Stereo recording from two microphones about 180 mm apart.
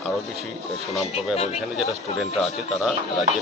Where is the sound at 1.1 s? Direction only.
35° left (ahead or behind).